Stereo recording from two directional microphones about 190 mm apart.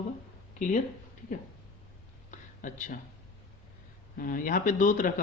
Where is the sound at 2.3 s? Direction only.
40° left (ahead or behind).